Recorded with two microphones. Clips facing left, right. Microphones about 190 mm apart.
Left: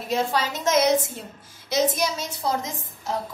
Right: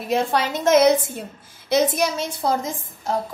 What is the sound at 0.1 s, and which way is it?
A woman's voice, 60° right (ahead or behind).